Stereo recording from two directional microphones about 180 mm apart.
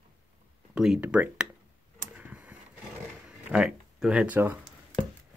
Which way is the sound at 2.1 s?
10° right (ahead or behind).